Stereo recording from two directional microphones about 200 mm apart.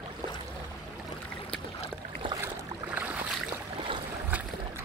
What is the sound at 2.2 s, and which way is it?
Boat, 20° right (ahead or behind).